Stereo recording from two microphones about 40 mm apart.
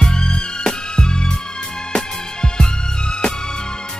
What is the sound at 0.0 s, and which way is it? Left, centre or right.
Music, centre.